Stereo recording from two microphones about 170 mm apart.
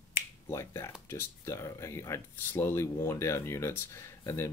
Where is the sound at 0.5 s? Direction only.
15° left (ahead or behind).